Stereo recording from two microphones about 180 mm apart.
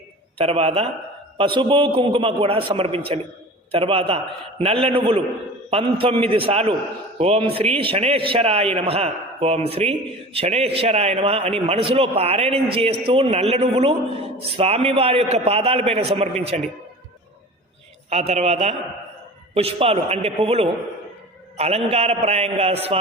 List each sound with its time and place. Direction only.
0.3 s a man's voice: 35° right (ahead or behind)
18.1 s a man's voice: 35° right (ahead or behind)